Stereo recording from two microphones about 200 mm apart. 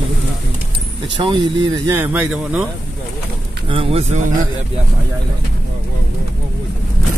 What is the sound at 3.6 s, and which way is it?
Speech, 25° right (ahead or behind).